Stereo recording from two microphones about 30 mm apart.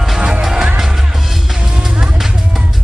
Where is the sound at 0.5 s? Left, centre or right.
Right.